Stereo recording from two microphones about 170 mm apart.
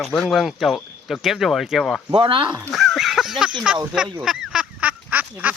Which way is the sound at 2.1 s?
30° right (ahead or behind).